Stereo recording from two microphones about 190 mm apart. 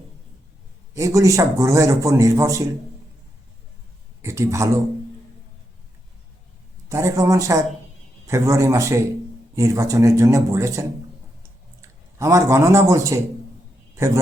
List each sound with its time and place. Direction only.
0.9 s a man's voice: 15° right (ahead or behind)
4.2 s a man's voice: 15° right (ahead or behind)
6.8 s a man's voice: 15° right (ahead or behind)